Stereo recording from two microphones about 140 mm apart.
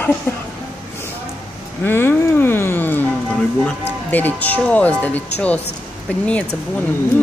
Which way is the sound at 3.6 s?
15° left (ahead or behind).